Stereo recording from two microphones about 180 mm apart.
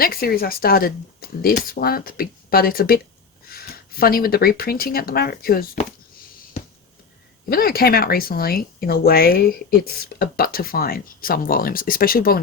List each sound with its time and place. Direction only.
0.0 s speech: 55° left (ahead or behind)
7.5 s speech: 55° left (ahead or behind)